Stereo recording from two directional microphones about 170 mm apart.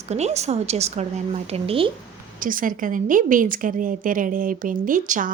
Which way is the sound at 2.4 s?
55° right (ahead or behind).